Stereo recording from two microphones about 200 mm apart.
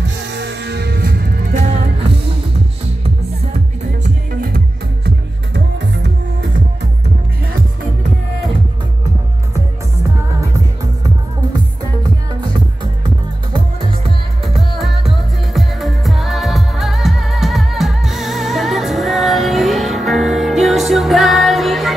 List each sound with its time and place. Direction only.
0.3 s music: 60° right (ahead or behind); by 1.7 s 45° right (ahead or behind)
4.0 s music: 45° right (ahead or behind)
5.0 s music: 60° right (ahead or behind)
14.4 s music: centre (ahead or behind)